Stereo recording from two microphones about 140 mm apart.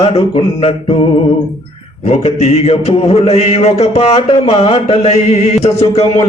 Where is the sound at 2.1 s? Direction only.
50° left (ahead or behind).